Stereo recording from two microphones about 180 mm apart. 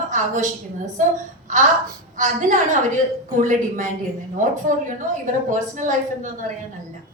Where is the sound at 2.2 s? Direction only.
45° right (ahead or behind).